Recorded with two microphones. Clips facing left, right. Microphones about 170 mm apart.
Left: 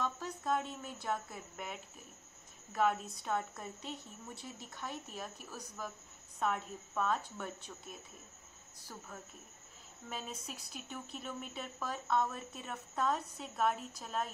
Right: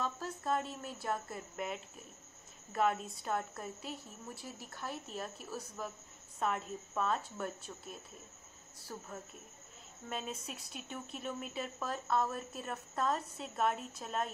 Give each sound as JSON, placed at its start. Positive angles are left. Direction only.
{"t": 0.0, "sound": "speech", "side_deg": 0}
{"t": 10.0, "sound": "speech", "side_deg": 0}